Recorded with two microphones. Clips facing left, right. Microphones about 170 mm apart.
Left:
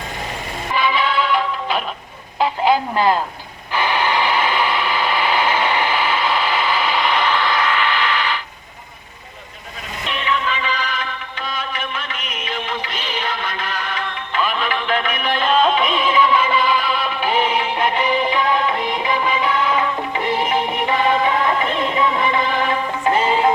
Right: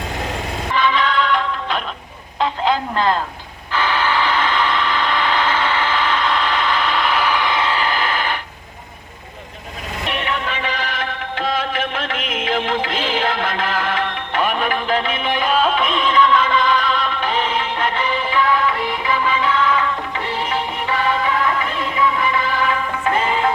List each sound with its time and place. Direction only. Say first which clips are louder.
0.7 s music: right 1 dB; 10° left (ahead or behind)
2.4 s a sound: left 2 dB; 10° left (ahead or behind)
3.7 s vehicle: even; 15° left (ahead or behind); by 8.4 s 45° right (ahead or behind)
10.1 s vehicle: left 2 dB; 60° right (ahead or behind)
11.3 s music: right 6 dB; 90° right; by 23.4 s 30° left (ahead or behind)